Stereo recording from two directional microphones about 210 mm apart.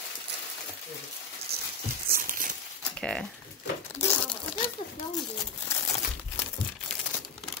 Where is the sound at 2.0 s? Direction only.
40° right (ahead or behind).